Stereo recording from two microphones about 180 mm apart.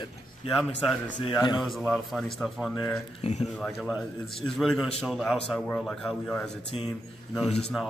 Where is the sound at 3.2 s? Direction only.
35° left (ahead or behind).